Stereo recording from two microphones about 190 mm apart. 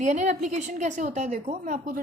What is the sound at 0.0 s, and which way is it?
A woman's voice, 40° right (ahead or behind).